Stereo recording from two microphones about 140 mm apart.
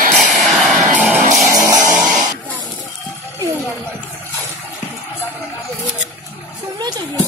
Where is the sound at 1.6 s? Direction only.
25° right (ahead or behind).